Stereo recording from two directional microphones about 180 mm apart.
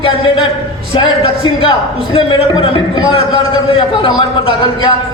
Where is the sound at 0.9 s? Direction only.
25° left (ahead or behind).